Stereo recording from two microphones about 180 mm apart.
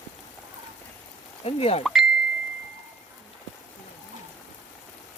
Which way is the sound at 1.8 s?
Centre (ahead or behind).